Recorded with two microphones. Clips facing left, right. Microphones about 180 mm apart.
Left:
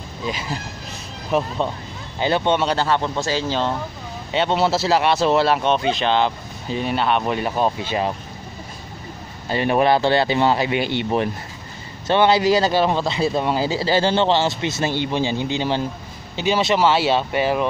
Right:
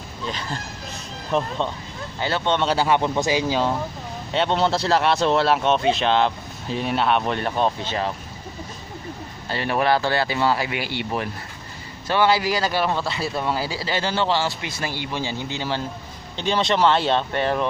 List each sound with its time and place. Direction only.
0.3 s speech: 10° left (ahead or behind)
2.1 s speech: 15° left (ahead or behind)
2.6 s speech: 5° right (ahead or behind)
2.9 s speech: 15° right (ahead or behind)
4.3 s speech: centre (ahead or behind)
9.5 s a man's voice: 20° left (ahead or behind)
16.3 s speech: 5° left (ahead or behind)